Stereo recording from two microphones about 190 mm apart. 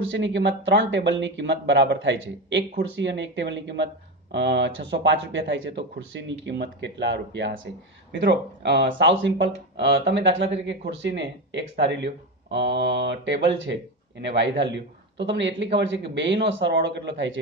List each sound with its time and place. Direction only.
0.0 s speech: 75° right (ahead or behind)